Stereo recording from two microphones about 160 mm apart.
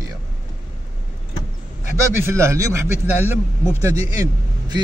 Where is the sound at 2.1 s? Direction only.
15° right (ahead or behind).